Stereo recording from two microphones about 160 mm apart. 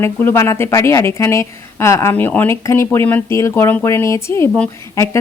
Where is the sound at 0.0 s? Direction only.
15° left (ahead or behind).